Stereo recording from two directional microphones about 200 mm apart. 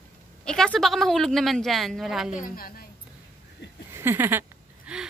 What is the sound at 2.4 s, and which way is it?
Speech, 45° left (ahead or behind).